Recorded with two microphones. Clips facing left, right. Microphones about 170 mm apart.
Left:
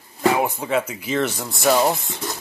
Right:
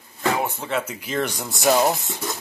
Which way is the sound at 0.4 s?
10° left (ahead or behind).